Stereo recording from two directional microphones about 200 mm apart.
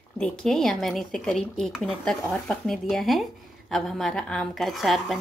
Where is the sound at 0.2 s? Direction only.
5° left (ahead or behind).